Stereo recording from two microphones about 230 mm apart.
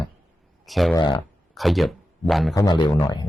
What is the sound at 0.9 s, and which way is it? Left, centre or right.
Speech, centre.